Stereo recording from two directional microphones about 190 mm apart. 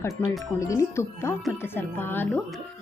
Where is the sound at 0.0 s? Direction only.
15° left (ahead or behind).